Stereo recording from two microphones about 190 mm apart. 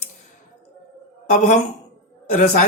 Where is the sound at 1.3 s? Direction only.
40° left (ahead or behind).